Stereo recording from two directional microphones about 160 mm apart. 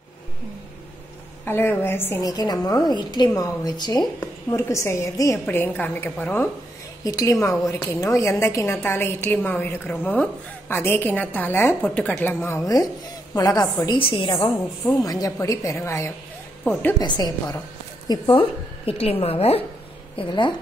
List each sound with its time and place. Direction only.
1.4 s a woman's voice: 15° left (ahead or behind)
7.1 s a woman's voice: 20° left (ahead or behind)